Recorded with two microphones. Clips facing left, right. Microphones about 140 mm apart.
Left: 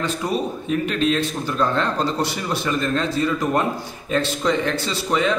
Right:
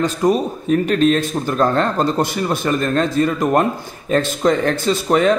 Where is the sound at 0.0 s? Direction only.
45° right (ahead or behind).